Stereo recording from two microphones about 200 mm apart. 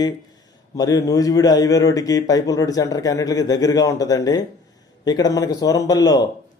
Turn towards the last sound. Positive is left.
turn(degrees=20)  # may be behind; listen again after turning